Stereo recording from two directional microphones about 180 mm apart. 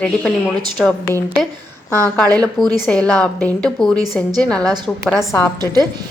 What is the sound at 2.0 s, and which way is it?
Speech, 20° right (ahead or behind).